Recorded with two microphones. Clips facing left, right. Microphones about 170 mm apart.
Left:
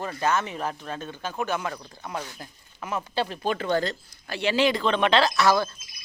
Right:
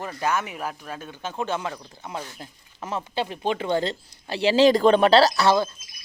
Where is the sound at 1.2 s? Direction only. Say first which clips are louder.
Right 1 dB; 25° right (ahead or behind).